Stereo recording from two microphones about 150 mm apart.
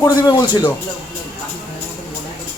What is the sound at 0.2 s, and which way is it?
Speech, 30° left (ahead or behind).